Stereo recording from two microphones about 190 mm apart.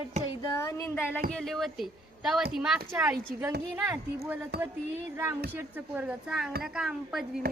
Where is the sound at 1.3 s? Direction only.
5° left (ahead or behind); by 4.0 s 15° right (ahead or behind).